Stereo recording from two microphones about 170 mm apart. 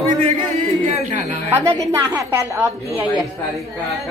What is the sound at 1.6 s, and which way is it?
A woman's voice, 15° right (ahead or behind).